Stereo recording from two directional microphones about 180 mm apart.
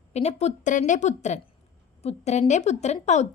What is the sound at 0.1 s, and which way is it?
A woman's voice, 35° left (ahead or behind).